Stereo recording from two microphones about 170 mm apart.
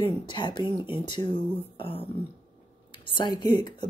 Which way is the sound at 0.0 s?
25° left (ahead or behind).